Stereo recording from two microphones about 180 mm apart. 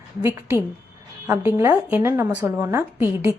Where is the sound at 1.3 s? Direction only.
15° right (ahead or behind).